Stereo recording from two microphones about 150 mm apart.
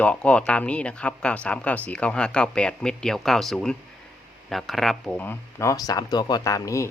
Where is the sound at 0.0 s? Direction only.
10° left (ahead or behind).